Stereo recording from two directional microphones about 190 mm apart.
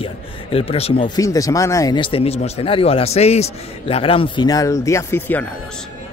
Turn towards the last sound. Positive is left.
turn(degrees=10)  # may be behind; listen again after turning